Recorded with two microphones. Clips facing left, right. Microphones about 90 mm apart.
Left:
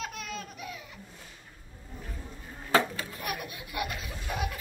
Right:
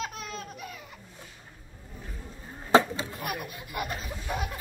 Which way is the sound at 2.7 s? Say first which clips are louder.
Right 5 dB; 25° right (ahead or behind).